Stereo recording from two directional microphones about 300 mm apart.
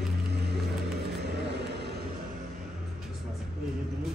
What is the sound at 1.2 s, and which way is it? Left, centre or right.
Vehicle, right.